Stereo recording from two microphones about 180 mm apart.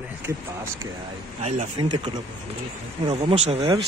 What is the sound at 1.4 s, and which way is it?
Speech, 40° right (ahead or behind).